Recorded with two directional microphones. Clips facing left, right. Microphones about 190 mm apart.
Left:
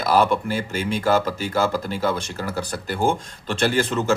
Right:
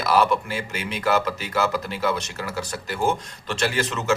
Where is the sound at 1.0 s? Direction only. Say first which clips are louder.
Left 1 dB; 30° left (ahead or behind).